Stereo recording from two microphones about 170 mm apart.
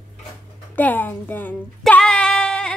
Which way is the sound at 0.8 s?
10° left (ahead or behind).